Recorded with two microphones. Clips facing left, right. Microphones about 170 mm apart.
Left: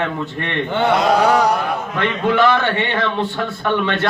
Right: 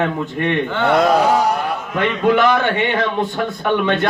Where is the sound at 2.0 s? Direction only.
15° right (ahead or behind).